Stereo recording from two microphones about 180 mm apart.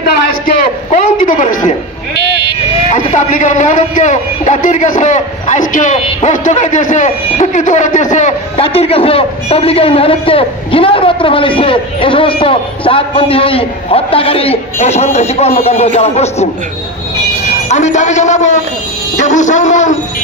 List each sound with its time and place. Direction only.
0.8 s a sound: 45° left (ahead or behind)
2.9 s a man's voice: 45° left (ahead or behind)
17.6 s a man's voice: 40° left (ahead or behind)